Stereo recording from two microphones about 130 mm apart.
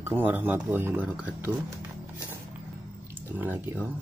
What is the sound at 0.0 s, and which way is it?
Speech, 15° right (ahead or behind).